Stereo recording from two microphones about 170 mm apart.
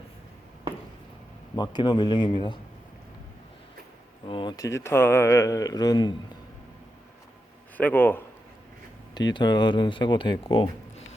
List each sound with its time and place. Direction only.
1.5 s speech: 25° left (ahead or behind)
4.3 s speech: 30° left (ahead or behind)
7.8 s a man's voice: 10° left (ahead or behind)
9.1 s speech: 25° left (ahead or behind)